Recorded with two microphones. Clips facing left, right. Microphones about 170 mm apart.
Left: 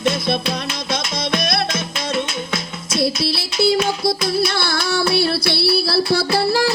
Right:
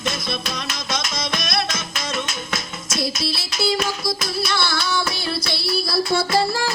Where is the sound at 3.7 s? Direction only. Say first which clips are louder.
Left 5 dB; 25° left (ahead or behind).